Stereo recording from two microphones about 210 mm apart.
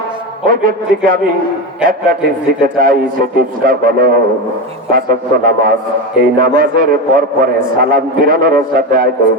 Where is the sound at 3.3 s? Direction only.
45° right (ahead or behind).